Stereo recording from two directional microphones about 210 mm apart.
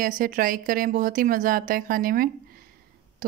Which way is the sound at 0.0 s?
40° right (ahead or behind).